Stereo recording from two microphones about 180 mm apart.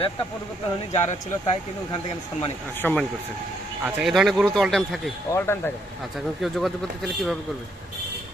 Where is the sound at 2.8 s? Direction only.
10° left (ahead or behind).